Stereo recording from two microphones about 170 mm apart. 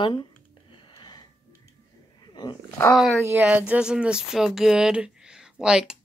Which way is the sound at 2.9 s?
Centre (ahead or behind).